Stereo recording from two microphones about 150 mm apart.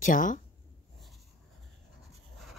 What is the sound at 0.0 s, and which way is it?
Speech, 60° left (ahead or behind).